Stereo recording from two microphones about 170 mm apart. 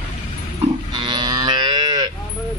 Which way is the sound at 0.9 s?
25° right (ahead or behind).